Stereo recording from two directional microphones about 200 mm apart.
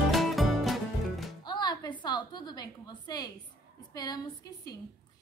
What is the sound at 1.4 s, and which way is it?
Music, 20° left (ahead or behind).